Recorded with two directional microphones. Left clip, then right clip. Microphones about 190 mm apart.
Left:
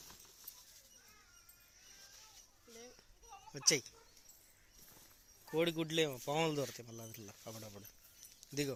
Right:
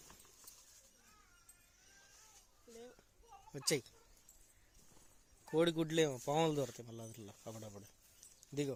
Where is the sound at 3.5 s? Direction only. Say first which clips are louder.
Left 4 dB; 20° right (ahead or behind).